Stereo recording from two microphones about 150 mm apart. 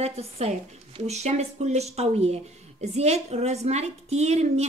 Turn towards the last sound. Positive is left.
turn(degrees=-45)  # may be behind; listen again after turning